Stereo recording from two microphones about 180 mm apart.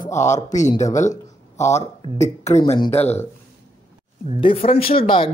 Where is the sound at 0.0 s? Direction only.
15° left (ahead or behind).